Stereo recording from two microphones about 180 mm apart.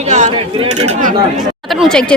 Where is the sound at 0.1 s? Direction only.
40° right (ahead or behind).